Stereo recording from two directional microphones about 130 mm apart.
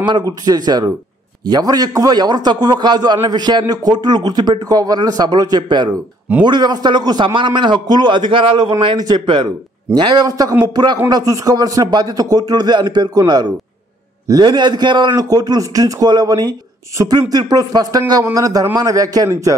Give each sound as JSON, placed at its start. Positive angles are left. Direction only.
{"t": 0.5, "sound": "a man's voice", "side_deg": -30}